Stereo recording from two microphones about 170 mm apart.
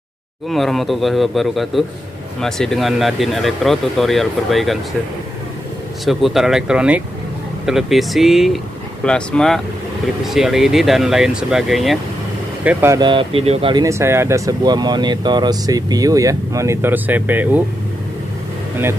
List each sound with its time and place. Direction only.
0.5 s speech: centre (ahead or behind)
6.0 s speech: centre (ahead or behind)
12.6 s speech: 15° right (ahead or behind)
13.0 s speech: 30° right (ahead or behind)
13.8 s speech: 15° right (ahead or behind)